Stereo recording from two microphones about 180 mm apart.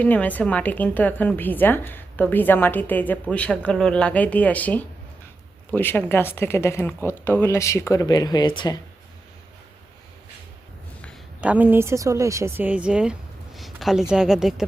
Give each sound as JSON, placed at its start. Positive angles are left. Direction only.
{"t": 0.0, "sound": "a woman's voice", "side_deg": 10}
{"t": 11.3, "sound": "speech", "side_deg": -10}